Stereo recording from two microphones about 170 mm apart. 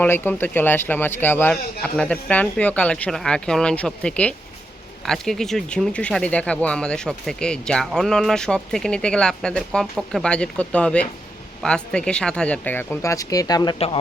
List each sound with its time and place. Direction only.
0.0 s speech: 10° left (ahead or behind)
13.7 s speech: 35° left (ahead or behind)